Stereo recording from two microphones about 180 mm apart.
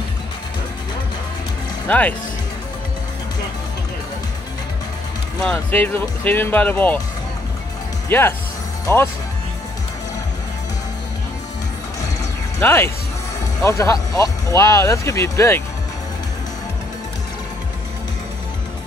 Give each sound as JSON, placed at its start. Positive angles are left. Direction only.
{"t": 1.9, "sound": "speech", "side_deg": 10}
{"t": 5.4, "sound": "speech", "side_deg": 5}
{"t": 8.1, "sound": "speech", "side_deg": 10}
{"t": 12.5, "sound": "speech", "side_deg": 15}